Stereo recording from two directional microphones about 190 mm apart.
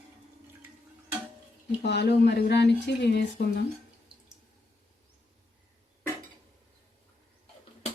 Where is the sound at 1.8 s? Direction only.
60° left (ahead or behind).